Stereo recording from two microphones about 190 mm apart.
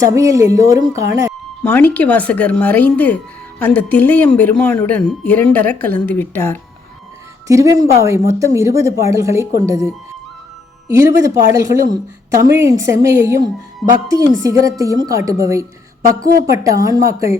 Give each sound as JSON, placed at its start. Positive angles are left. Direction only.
{"t": 0.0, "sound": "speech", "side_deg": -15}
{"t": 1.6, "sound": "speech", "side_deg": 10}
{"t": 7.4, "sound": "speech", "side_deg": -15}
{"t": 13.8, "sound": "speech", "side_deg": 0}
{"t": 14.3, "sound": "speech", "side_deg": -20}
{"t": 16.6, "sound": "speech", "side_deg": -20}